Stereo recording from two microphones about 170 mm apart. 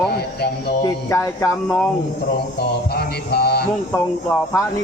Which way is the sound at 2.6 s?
70° left (ahead or behind).